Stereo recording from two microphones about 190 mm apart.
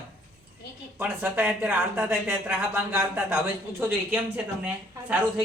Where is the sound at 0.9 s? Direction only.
10° right (ahead or behind).